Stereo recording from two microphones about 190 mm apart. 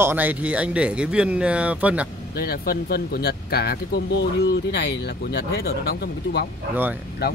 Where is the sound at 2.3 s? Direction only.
55° left (ahead or behind).